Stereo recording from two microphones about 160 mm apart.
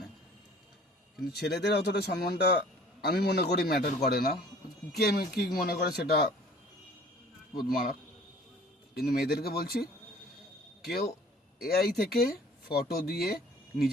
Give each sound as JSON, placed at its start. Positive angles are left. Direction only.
{"t": 1.3, "sound": "a man's voice", "side_deg": 90}
{"t": 7.7, "sound": "speech", "side_deg": 70}
{"t": 9.0, "sound": "speech", "side_deg": 80}